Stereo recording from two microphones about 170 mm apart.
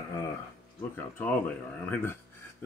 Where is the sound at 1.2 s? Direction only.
10° left (ahead or behind).